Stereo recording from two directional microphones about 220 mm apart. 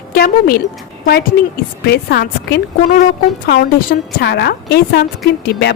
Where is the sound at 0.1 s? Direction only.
45° left (ahead or behind).